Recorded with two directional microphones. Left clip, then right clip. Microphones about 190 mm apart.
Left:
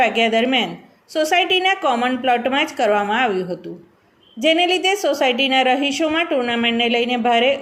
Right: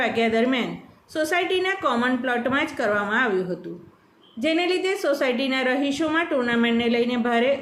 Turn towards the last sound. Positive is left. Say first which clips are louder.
# left 5 dB
turn(degrees=20)  # may be behind; listen again after turning